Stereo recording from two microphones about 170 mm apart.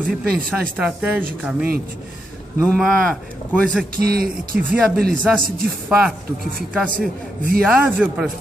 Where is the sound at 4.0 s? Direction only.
60° right (ahead or behind).